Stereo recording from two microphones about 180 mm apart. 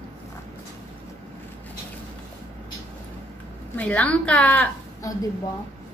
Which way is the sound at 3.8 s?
5° left (ahead or behind).